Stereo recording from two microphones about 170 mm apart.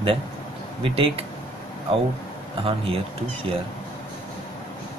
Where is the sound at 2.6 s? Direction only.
35° right (ahead or behind).